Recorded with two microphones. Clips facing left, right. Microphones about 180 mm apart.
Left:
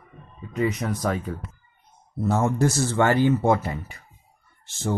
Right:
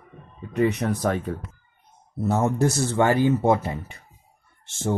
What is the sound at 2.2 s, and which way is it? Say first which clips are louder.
Speech: even; 20° right (ahead or behind).